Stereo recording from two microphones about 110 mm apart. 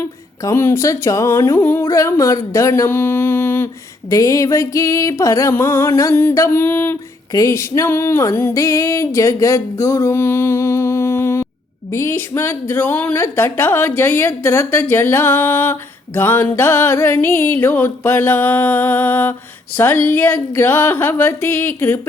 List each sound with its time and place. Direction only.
0.4 s a woman's voice: 25° left (ahead or behind)
1.8 s a sound: 30° left (ahead or behind)
4.1 s a woman's voice: 30° left (ahead or behind)
7.3 s music: 30° left (ahead or behind)
11.9 s a woman's voice: 25° left (ahead or behind)